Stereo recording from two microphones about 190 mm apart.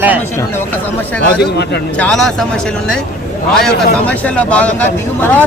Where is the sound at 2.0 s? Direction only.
5° left (ahead or behind).